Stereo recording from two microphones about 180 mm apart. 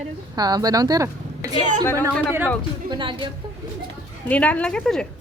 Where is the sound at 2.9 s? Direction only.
25° right (ahead or behind).